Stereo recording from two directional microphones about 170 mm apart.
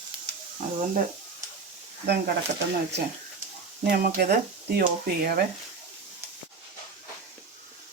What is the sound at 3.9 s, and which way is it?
Speech, 70° right (ahead or behind).